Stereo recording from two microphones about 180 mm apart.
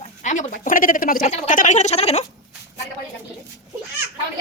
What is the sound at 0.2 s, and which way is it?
A woman's voice, 45° left (ahead or behind).